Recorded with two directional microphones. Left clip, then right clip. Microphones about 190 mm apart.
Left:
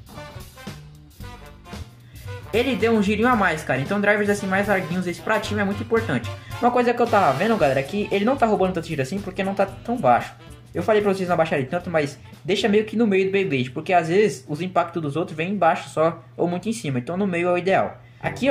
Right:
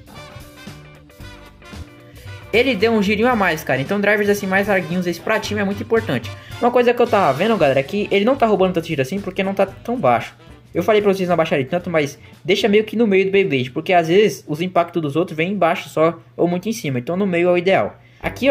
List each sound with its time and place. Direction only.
0.1 s music: centre (ahead or behind)
2.5 s speech: 40° right (ahead or behind)
4.7 s speech: centre (ahead or behind)
5.0 s speech: 40° right (ahead or behind)